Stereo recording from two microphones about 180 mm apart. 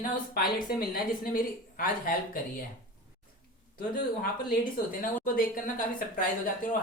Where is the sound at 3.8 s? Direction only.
50° left (ahead or behind).